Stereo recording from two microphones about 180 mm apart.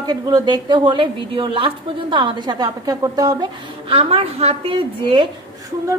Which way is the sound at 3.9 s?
35° right (ahead or behind).